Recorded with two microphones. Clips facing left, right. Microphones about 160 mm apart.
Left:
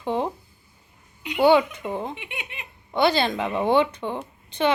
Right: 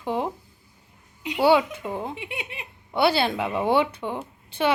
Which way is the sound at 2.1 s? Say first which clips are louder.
Right 3 dB; 35° right (ahead or behind).